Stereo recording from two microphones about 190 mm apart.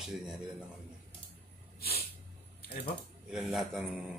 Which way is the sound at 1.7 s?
55° left (ahead or behind).